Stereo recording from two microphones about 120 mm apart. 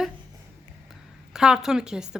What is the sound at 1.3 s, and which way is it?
Speech, 5° right (ahead or behind).